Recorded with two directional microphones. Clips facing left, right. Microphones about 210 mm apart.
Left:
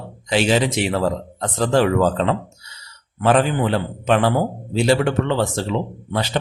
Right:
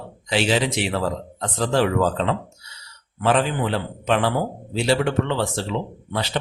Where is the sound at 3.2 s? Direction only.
45° left (ahead or behind).